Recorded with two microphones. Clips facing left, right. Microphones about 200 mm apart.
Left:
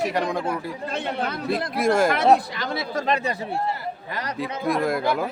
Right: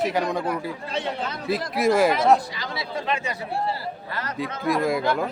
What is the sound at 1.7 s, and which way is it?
Speech, centre (ahead or behind).